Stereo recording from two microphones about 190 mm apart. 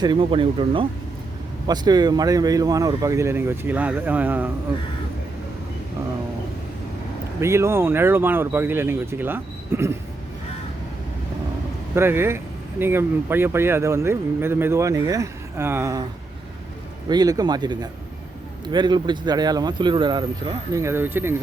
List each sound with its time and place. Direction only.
0.0 s speech: 25° right (ahead or behind); by 4.5 s 10° right (ahead or behind)
7.4 s speech: 15° right (ahead or behind)
11.9 s speech: 10° right (ahead or behind)
17.1 s speech: 20° right (ahead or behind)
20.7 s speech: 15° right (ahead or behind)